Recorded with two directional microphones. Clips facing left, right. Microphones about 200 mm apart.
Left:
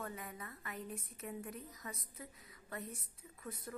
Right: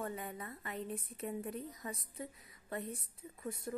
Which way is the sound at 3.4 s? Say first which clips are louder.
Right 6 dB; 20° right (ahead or behind).